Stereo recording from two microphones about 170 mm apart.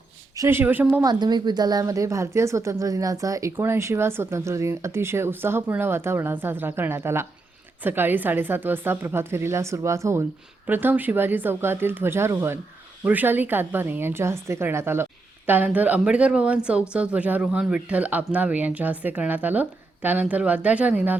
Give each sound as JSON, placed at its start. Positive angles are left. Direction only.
{"t": 0.3, "sound": "speech", "side_deg": -15}
{"t": 1.0, "sound": "speech", "side_deg": -25}